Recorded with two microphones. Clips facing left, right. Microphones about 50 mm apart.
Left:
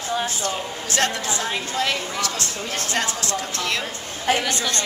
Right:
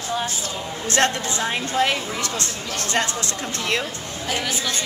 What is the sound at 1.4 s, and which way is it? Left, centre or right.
Speech, centre.